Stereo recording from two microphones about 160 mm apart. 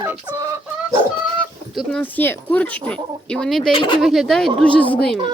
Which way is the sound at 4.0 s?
Centre (ahead or behind).